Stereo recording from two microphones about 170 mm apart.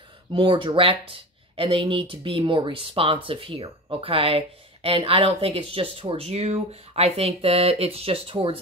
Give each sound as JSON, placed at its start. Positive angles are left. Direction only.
{"t": 0.3, "sound": "speech", "side_deg": -30}